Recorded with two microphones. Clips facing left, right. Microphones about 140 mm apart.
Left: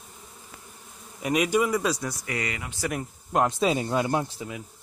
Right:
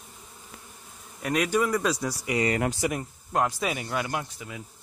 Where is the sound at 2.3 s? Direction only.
15° right (ahead or behind).